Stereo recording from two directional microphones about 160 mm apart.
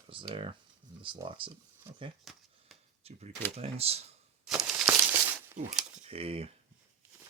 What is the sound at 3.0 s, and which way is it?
Speech, 40° right (ahead or behind).